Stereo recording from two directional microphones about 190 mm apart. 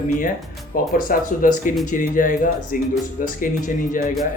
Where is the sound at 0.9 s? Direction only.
45° left (ahead or behind).